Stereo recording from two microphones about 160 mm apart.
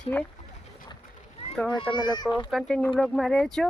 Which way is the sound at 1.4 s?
40° left (ahead or behind).